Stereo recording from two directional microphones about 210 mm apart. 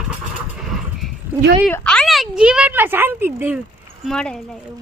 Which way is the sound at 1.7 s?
5° left (ahead or behind).